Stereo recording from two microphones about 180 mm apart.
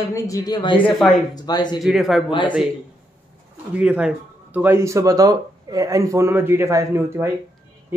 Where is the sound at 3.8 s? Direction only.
5° right (ahead or behind).